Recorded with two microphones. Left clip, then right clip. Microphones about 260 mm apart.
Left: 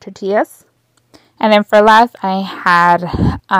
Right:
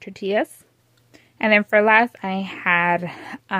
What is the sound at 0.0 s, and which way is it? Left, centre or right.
Speech, centre.